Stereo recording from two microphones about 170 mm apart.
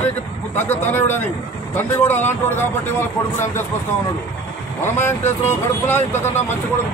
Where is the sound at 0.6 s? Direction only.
10° left (ahead or behind).